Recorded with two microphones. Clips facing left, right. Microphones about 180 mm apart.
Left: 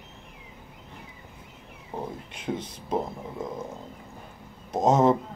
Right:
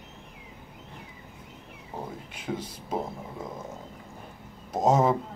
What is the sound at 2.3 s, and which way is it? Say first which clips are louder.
Whispering: left 2 dB; 5° right (ahead or behind).